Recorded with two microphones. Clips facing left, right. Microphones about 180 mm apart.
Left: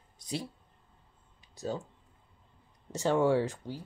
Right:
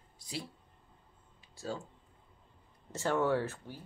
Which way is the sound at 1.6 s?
20° left (ahead or behind).